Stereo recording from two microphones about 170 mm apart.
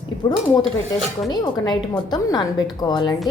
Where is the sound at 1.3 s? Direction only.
25° left (ahead or behind).